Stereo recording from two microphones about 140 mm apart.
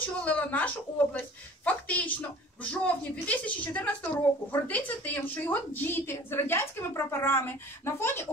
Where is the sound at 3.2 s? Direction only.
10° left (ahead or behind).